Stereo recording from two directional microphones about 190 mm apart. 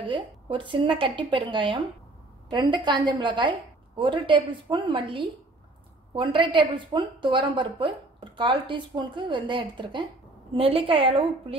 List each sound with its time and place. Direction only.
0.0 s a woman's voice: 25° right (ahead or behind)